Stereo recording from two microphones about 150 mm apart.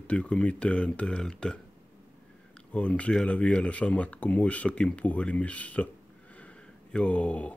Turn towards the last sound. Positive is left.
turn(degrees=10)  # may be behind; listen again after turning